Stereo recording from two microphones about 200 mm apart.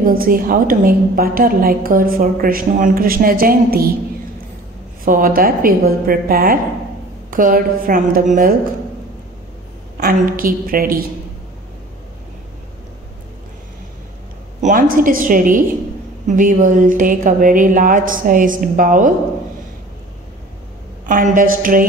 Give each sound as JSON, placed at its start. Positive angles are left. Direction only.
{"t": 0.0, "sound": "a woman's voice", "side_deg": -45}
{"t": 5.0, "sound": "a woman's voice", "side_deg": -45}
{"t": 9.9, "sound": "a woman's voice", "side_deg": -45}
{"t": 14.6, "sound": "a woman's voice", "side_deg": -40}
{"t": 21.0, "sound": "a woman's voice", "side_deg": -40}